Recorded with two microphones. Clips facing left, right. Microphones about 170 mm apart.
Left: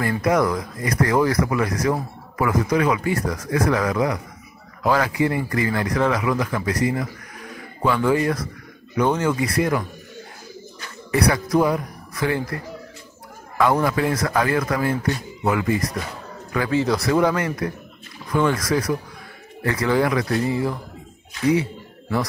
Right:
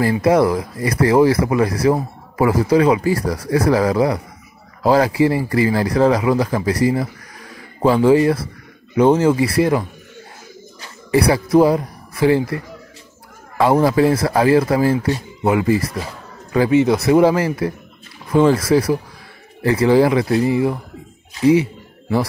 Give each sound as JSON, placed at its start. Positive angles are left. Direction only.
{"t": 0.2, "sound": "speech", "side_deg": -30}
{"t": 13.6, "sound": "speech", "side_deg": -30}